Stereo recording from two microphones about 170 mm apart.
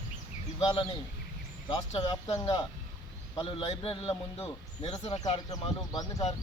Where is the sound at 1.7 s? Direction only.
25° left (ahead or behind).